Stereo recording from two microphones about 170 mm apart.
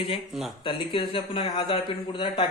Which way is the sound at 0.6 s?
30° left (ahead or behind).